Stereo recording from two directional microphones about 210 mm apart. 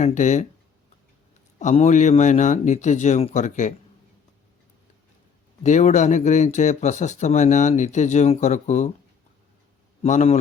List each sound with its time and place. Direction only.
0.0 s speech: 35° left (ahead or behind)
1.5 s speech: 30° left (ahead or behind)
5.6 s speech: 35° left (ahead or behind)
10.0 s speech: 30° left (ahead or behind)